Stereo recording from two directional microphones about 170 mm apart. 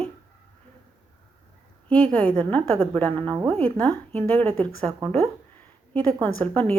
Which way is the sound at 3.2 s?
25° right (ahead or behind).